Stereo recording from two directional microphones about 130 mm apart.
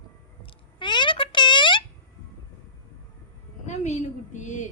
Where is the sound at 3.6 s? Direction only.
65° left (ahead or behind).